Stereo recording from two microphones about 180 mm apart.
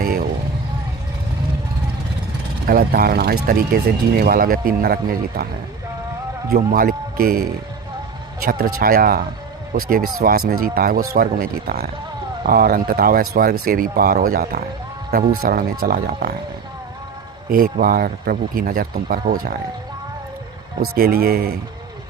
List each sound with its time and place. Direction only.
0.0 s a sound: 60° right (ahead or behind)
2.6 s speech: 55° right (ahead or behind)
6.5 s speech: 50° right (ahead or behind)
17.5 s speech: 50° right (ahead or behind)
20.9 s speech: 60° right (ahead or behind)